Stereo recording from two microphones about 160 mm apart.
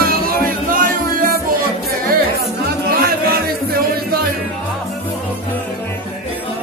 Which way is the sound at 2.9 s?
70° right (ahead or behind).